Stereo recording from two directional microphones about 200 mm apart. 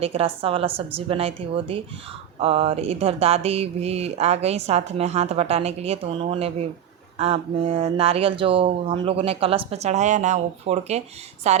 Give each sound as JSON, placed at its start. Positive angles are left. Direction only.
{"t": 0.0, "sound": "speech", "side_deg": -30}